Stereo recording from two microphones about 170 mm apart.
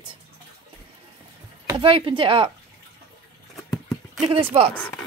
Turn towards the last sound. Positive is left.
turn(degrees=-30)  # may be behind; listen again after turning